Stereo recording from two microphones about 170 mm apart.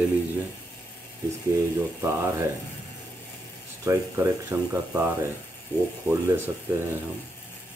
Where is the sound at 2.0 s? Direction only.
15° right (ahead or behind).